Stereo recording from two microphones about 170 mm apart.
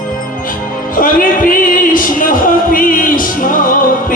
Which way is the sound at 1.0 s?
55° left (ahead or behind).